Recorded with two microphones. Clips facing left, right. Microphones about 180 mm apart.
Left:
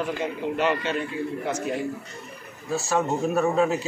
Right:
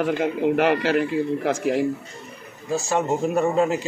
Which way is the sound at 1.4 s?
90° right.